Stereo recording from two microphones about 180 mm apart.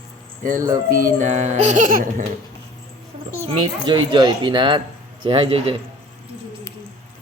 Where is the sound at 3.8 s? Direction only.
25° right (ahead or behind).